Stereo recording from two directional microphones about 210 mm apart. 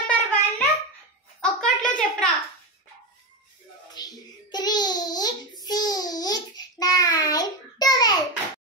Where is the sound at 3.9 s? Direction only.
20° left (ahead or behind).